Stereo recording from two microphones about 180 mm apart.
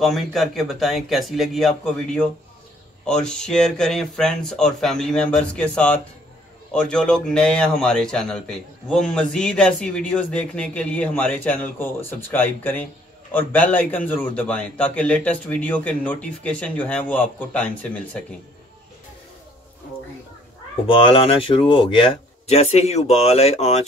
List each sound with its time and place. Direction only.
0.0 s a man's voice: centre (ahead or behind)
20.9 s speech: 30° left (ahead or behind)